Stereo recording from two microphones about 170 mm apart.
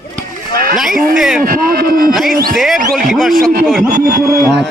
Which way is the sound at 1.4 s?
60° right (ahead or behind).